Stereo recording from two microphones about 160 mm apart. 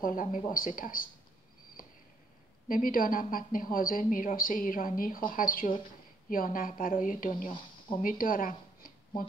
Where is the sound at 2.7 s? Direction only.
60° left (ahead or behind).